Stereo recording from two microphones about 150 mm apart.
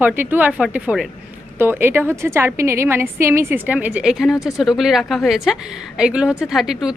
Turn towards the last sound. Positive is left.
turn(degrees=-5)  # may be behind; listen again after turning